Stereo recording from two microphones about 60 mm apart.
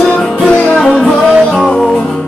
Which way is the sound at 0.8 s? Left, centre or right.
Centre.